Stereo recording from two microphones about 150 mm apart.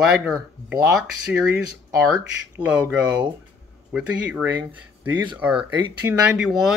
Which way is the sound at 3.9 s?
10° right (ahead or behind).